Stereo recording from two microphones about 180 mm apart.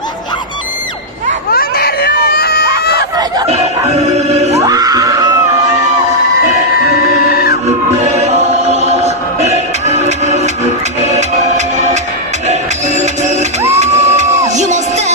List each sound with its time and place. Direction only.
1.5 s baby cry: 60° left (ahead or behind)
3.9 s music: 35° right (ahead or behind)
4.6 s screaming: 20° right (ahead or behind)
6.9 s music: 60° left (ahead or behind)
8.0 s choir: 40° right (ahead or behind)
11.0 s music: 40° right (ahead or behind)